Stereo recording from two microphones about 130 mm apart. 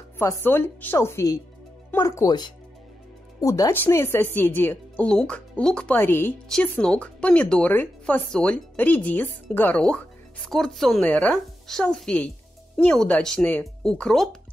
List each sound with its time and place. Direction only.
0.2 s speech: 15° left (ahead or behind)